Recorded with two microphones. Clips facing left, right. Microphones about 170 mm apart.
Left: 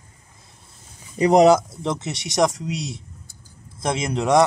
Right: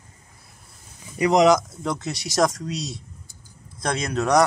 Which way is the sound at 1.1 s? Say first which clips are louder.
Left 3 dB; 30° left (ahead or behind).